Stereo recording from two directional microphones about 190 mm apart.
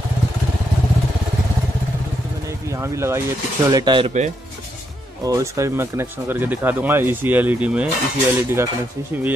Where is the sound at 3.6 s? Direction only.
20° right (ahead or behind).